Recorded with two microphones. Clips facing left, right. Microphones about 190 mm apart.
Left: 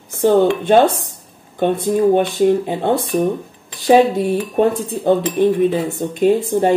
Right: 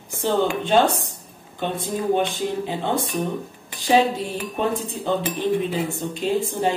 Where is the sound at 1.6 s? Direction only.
55° left (ahead or behind).